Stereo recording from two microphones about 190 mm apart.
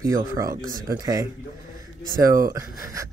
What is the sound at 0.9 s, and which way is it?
Speech, 20° right (ahead or behind).